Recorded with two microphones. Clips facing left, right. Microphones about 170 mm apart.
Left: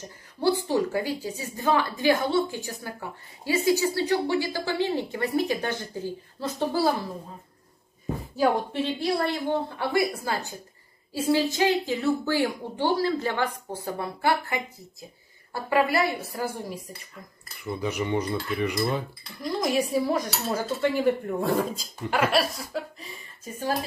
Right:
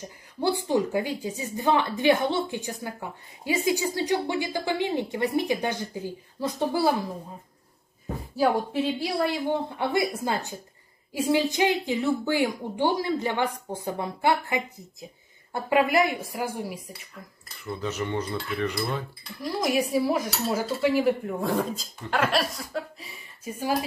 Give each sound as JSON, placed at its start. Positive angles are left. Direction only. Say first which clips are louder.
{"t": 0.4, "sound": "a woman's voice", "louder": "left 1 dB", "side_deg": -20}
{"t": 8.4, "sound": "a woman's voice", "louder": "even", "side_deg": -5}
{"t": 9.8, "sound": "a woman's voice", "louder": "even", "side_deg": -20}
{"t": 17.6, "sound": "speech", "louder": "left 2 dB", "side_deg": 15}
{"t": 19.4, "sound": "cutlery", "louder": "even", "side_deg": -5}
{"t": 23.4, "sound": "a woman's voice", "louder": "right 2 dB", "side_deg": -10}